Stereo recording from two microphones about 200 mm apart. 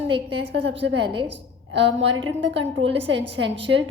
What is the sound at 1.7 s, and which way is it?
A woman's voice, 60° right (ahead or behind).